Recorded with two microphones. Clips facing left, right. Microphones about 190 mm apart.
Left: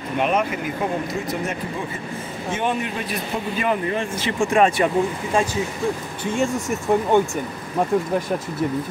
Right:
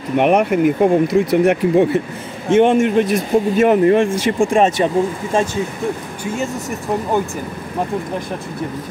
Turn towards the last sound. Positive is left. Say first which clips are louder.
# left 1 dB
turn(degrees=0)  # may be behind; listen again after turning